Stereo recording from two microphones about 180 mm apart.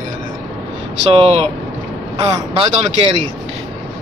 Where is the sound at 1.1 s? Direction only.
35° right (ahead or behind).